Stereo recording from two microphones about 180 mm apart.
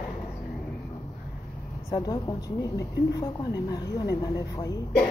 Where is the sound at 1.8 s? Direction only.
20° left (ahead or behind).